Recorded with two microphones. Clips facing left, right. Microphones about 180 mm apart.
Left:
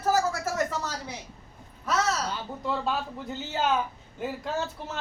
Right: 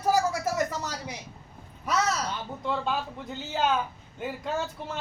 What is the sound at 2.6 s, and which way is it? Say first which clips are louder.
Speech: even; centre (ahead or behind).